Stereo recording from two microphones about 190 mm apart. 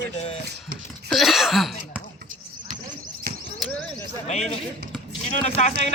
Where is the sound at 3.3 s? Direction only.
55° right (ahead or behind).